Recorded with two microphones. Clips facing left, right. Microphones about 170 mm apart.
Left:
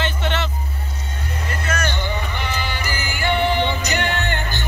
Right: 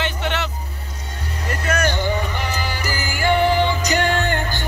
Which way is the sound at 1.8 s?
40° right (ahead or behind).